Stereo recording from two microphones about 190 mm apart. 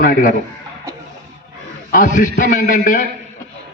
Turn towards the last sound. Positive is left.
turn(degrees=45)  # may be behind; listen again after turning